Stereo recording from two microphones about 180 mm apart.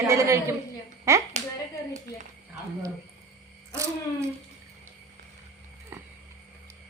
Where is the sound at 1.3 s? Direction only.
40° right (ahead or behind).